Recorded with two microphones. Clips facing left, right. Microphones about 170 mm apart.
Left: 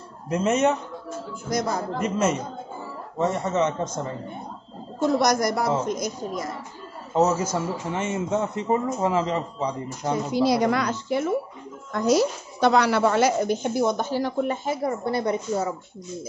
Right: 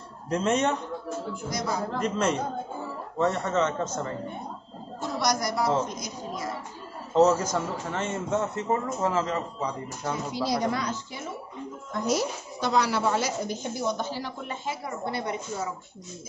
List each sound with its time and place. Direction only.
0.3 s a man's voice: 5° left (ahead or behind)
1.5 s a woman's voice: 50° left (ahead or behind)
2.0 s a man's voice: 5° left (ahead or behind)
5.2 s a woman's voice: 50° left (ahead or behind)
7.2 s a man's voice: 5° left (ahead or behind)
10.3 s a woman's voice: 65° left (ahead or behind)
11.9 s a woman's voice: 80° left; by 15.7 s 40° left (ahead or behind)